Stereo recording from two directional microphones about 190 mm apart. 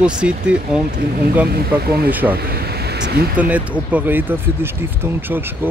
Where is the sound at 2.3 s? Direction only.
55° right (ahead or behind).